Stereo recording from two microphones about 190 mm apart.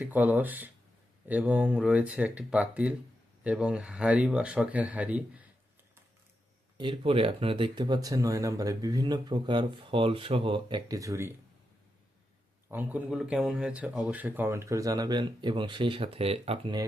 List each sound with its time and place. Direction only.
0.0 s speech: 10° right (ahead or behind)
6.7 s speech: 25° right (ahead or behind)
12.6 s speech: 10° right (ahead or behind); by 16.7 s 30° right (ahead or behind)